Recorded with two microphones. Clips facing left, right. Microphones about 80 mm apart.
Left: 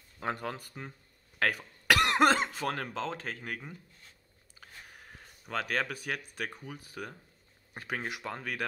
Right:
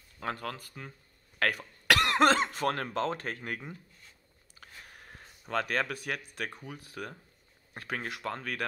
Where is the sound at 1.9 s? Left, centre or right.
Centre.